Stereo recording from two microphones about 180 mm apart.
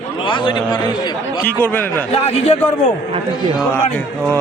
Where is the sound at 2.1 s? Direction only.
35° left (ahead or behind).